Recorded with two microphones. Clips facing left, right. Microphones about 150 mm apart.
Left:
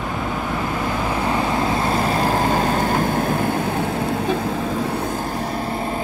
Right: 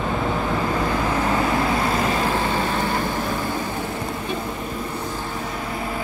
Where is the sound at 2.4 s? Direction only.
45° left (ahead or behind).